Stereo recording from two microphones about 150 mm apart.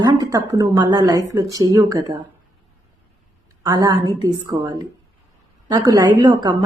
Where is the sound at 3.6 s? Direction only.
25° right (ahead or behind).